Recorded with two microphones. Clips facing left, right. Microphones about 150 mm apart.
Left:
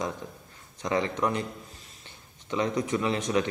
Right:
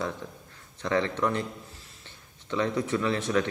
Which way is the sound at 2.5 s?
15° left (ahead or behind).